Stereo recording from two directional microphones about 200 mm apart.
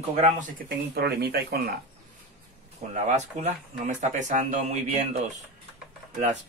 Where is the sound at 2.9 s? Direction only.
40° right (ahead or behind).